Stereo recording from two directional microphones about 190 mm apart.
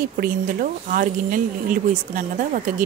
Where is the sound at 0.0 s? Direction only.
50° right (ahead or behind).